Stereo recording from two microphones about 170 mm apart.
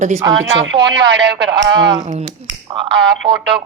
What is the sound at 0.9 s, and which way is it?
Speech, 90° right.